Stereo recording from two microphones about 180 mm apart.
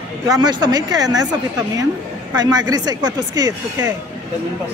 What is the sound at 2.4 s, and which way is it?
A woman's voice, 20° right (ahead or behind).